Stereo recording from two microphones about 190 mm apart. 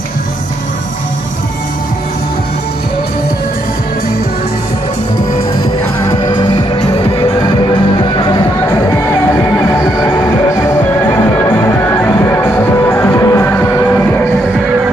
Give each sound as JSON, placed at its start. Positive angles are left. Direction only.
{"t": 6.2, "sound": "music", "side_deg": 20}